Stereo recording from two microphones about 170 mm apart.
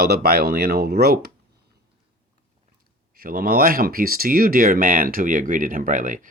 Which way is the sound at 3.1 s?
60° right (ahead or behind).